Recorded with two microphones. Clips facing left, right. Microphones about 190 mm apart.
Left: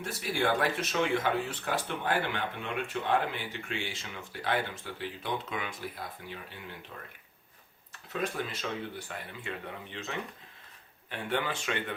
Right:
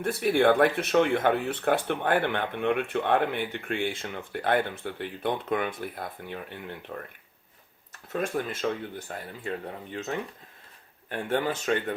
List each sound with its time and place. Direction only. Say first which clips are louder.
0.0 s speech: right 9 dB; 60° right (ahead or behind)
8.1 s speech: right 5 dB; 50° right (ahead or behind)